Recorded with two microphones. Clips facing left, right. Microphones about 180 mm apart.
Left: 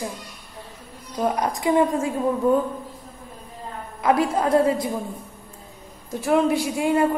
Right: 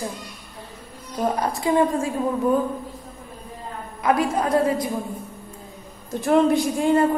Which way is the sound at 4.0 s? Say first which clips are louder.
Left 1 dB; 25° left (ahead or behind).